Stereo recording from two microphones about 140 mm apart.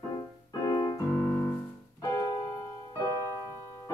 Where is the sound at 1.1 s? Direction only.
20° left (ahead or behind).